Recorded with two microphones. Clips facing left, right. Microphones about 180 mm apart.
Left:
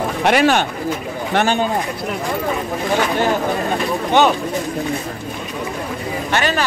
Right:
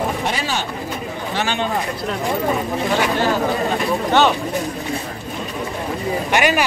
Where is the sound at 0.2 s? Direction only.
65° left (ahead or behind).